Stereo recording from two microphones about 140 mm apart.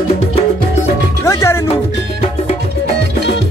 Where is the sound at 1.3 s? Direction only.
20° left (ahead or behind).